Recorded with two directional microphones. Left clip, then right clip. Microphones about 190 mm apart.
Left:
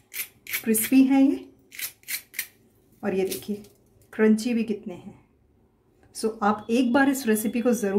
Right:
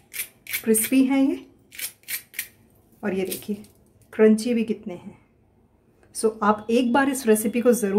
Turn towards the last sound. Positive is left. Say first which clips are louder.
# right 4 dB
turn(degrees=-15)  # may be behind; listen again after turning